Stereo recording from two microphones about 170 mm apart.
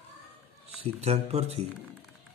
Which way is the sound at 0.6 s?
40° right (ahead or behind).